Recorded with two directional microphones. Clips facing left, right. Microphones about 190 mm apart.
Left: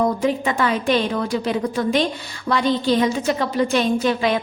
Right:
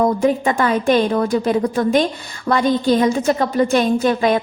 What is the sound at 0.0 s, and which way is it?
A woman's voice, 45° right (ahead or behind).